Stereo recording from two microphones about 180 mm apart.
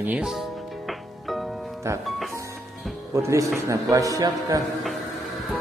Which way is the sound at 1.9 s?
15° right (ahead or behind).